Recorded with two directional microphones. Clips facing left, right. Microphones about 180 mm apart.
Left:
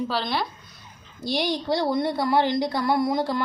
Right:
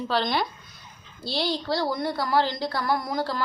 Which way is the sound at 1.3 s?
20° left (ahead or behind).